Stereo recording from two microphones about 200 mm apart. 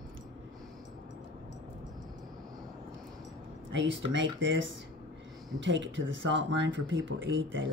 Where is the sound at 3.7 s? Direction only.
65° right (ahead or behind).